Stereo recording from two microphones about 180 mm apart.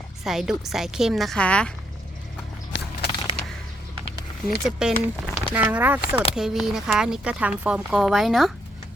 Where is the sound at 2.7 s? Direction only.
90° left.